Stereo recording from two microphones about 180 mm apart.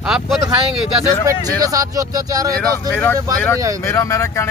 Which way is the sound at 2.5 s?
5° left (ahead or behind).